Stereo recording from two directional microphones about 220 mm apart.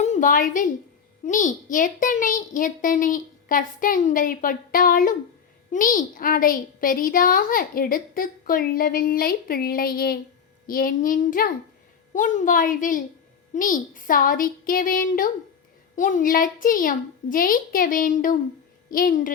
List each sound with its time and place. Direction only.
0.0 s a woman's voice: 35° left (ahead or behind)